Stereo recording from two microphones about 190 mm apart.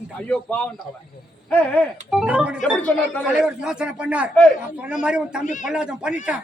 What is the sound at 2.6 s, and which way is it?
Speech, 5° left (ahead or behind).